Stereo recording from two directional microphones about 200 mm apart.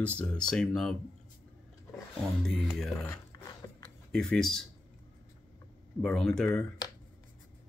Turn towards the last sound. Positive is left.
turn(degrees=5)  # may be behind; listen again after turning